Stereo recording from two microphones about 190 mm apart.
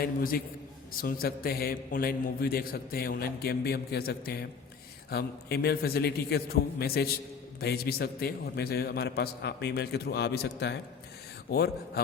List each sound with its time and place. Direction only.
0.0 s a man's voice: 50° left (ahead or behind)